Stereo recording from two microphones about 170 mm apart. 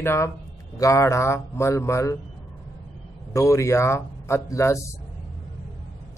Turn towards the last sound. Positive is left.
turn(degrees=15)  # may be behind; listen again after turning